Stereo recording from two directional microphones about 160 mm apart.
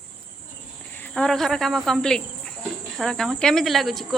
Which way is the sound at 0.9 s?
10° left (ahead or behind).